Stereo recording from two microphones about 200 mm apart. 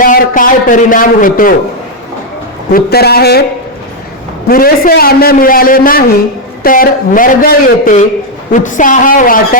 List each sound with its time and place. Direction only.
0.0 s a man's voice: 40° left (ahead or behind)
2.7 s a man's voice: 50° left (ahead or behind)
4.4 s a man's voice: 45° left (ahead or behind)